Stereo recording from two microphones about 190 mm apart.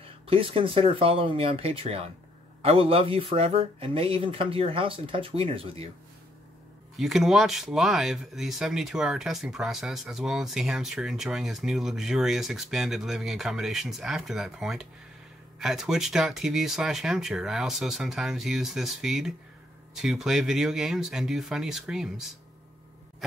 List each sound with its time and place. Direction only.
0.0 s speech: 30° right (ahead or behind)
7.0 s speech: centre (ahead or behind)